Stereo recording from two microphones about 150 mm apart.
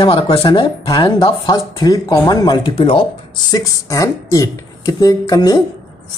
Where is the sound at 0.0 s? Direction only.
35° left (ahead or behind).